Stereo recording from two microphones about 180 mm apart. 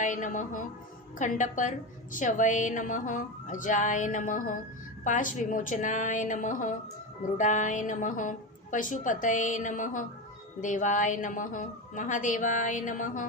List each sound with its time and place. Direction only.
0.0 s a woman's voice: 45° left (ahead or behind)